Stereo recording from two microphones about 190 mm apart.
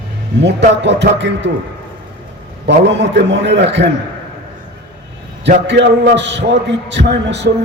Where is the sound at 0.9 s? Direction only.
65° right (ahead or behind).